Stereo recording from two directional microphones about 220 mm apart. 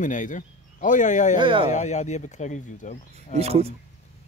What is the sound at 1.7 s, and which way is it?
Speech, 30° left (ahead or behind).